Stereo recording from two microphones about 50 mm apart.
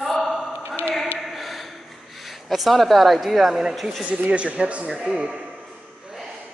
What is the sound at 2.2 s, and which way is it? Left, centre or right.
Speech, centre.